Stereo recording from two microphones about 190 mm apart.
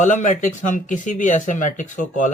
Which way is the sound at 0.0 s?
40° left (ahead or behind).